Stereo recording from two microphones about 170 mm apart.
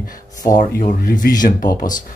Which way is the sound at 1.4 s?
50° left (ahead or behind).